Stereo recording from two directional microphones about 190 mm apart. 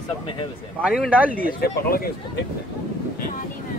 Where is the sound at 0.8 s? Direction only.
5° right (ahead or behind).